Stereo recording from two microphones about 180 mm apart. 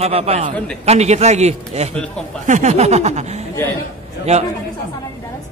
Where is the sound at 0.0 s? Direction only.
35° right (ahead or behind).